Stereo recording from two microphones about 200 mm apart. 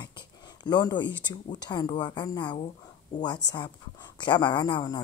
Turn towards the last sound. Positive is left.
turn(degrees=20)  # may be behind; listen again after turning